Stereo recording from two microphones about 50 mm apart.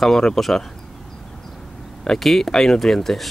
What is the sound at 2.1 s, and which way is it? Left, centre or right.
Speech, centre.